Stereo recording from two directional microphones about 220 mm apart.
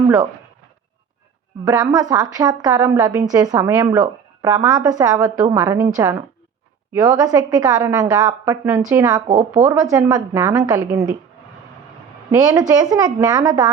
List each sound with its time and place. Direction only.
1.6 s a woman's voice: 15° right (ahead or behind)
9.2 s speech: 30° right (ahead or behind)
9.5 s a woman's voice: 10° right (ahead or behind)
12.3 s a woman's voice: 15° right (ahead or behind)